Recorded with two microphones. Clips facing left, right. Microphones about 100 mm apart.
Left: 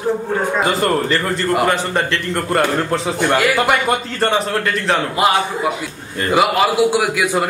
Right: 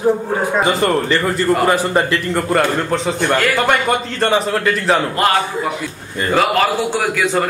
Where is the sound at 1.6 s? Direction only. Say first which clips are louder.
Right 2 dB; 10° right (ahead or behind).